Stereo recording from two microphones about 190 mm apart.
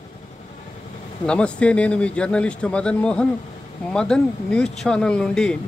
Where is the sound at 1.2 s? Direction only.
5° left (ahead or behind).